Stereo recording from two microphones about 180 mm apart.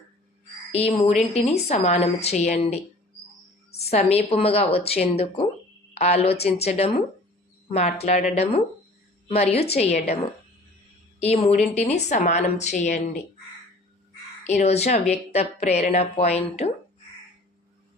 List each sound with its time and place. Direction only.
0.7 s a woman's voice: 35° left (ahead or behind)
3.8 s a woman's voice: 35° left (ahead or behind)
14.4 s a woman's voice: 40° left (ahead or behind)